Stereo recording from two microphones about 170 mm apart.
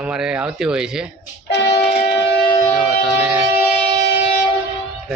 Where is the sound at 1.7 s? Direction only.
40° left (ahead or behind).